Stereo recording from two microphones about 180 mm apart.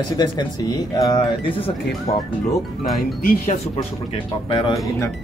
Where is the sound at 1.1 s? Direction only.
30° left (ahead or behind).